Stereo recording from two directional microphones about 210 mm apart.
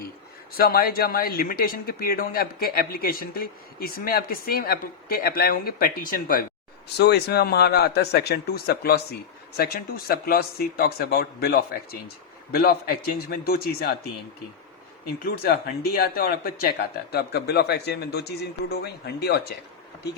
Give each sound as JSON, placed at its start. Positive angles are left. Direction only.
{"t": 0.5, "sound": "speech", "side_deg": 45}
{"t": 15.2, "sound": "speech", "side_deg": 45}